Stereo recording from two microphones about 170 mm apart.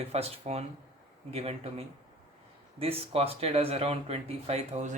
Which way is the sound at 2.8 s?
35° right (ahead or behind).